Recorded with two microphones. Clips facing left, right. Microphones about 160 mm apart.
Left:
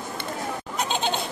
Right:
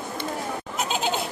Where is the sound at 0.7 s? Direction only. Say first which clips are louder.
Even; 5° right (ahead or behind).